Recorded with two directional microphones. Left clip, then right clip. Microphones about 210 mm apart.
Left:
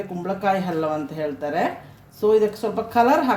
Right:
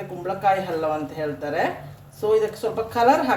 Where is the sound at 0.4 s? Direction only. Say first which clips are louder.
Right 1 dB; 55° left (ahead or behind).